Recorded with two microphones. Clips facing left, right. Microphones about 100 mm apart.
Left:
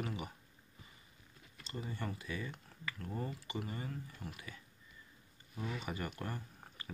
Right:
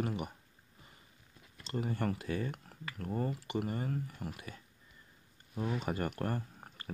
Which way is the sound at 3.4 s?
60° right (ahead or behind).